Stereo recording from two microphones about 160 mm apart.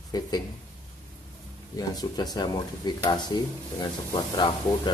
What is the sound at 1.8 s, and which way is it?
Speech, 25° left (ahead or behind).